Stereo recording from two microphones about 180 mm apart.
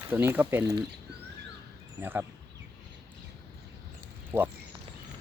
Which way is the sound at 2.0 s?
10° right (ahead or behind).